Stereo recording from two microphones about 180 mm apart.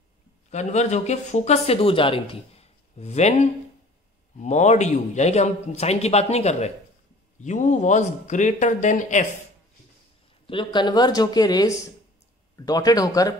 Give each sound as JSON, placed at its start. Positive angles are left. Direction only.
{"t": 0.5, "sound": "speech", "side_deg": 40}
{"t": 10.4, "sound": "speech", "side_deg": 30}